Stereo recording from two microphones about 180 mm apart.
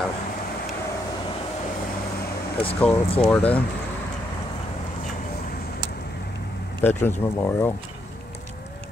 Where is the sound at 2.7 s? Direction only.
10° left (ahead or behind).